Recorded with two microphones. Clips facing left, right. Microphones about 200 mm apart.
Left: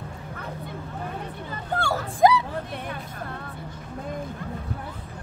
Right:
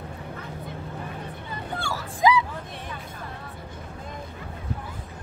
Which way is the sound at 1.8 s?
60° left (ahead or behind).